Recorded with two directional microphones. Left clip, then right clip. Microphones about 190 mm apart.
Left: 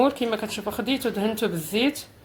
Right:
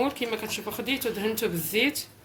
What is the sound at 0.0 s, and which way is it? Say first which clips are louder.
A woman's voice: left 6 dB; 40° left (ahead or behind).